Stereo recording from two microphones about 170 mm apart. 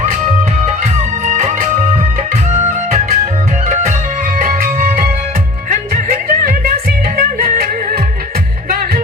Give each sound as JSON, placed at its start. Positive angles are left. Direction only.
{"t": 0.9, "sound": "music", "side_deg": -45}
{"t": 4.4, "sound": "music", "side_deg": -55}